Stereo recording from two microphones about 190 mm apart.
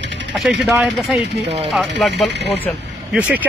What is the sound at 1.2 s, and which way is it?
Speech, 65° right (ahead or behind).